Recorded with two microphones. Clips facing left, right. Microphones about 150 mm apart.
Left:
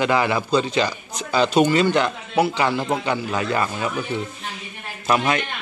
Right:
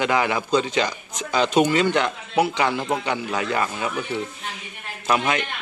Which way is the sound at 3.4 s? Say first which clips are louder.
Left 1 dB; 15° right (ahead or behind).